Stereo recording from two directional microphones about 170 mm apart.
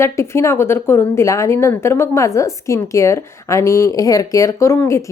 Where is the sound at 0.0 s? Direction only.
15° left (ahead or behind).